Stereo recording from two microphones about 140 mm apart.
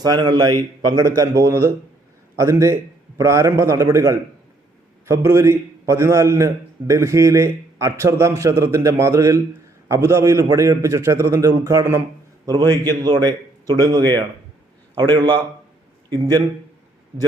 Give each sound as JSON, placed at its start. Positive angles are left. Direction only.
{"t": 0.0, "sound": "a man's voice", "side_deg": -30}